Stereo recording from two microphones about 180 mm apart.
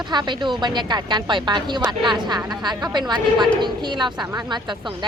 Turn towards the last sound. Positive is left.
turn(degrees=-25)  # may be behind; listen again after turning